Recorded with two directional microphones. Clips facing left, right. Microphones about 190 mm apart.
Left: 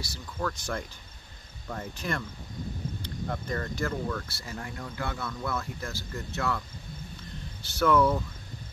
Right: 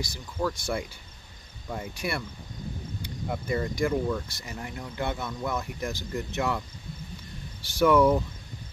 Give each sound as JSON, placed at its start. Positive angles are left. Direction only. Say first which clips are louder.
{"t": 0.0, "sound": "speech", "louder": "right 3 dB", "side_deg": -10}
{"t": 7.8, "sound": "speech", "louder": "right 3 dB", "side_deg": -10}